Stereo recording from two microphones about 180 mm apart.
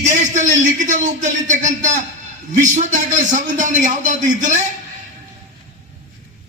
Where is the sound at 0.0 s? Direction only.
40° right (ahead or behind).